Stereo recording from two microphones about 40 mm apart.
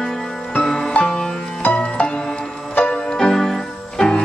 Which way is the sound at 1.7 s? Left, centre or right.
Left.